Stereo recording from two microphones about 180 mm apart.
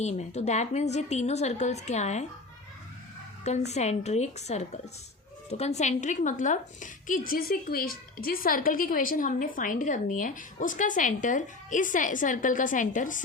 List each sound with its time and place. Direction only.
0.0 s a woman's voice: 40° left (ahead or behind)
3.4 s a woman's voice: 40° left (ahead or behind)